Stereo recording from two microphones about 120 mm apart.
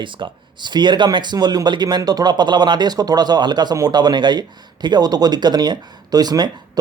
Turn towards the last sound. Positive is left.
turn(degrees=-35)  # may be behind; listen again after turning